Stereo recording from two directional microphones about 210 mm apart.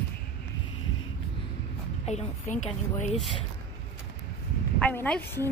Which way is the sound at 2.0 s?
35° left (ahead or behind).